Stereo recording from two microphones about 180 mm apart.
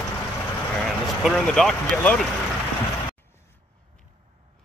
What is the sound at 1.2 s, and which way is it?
Speech, centre (ahead or behind).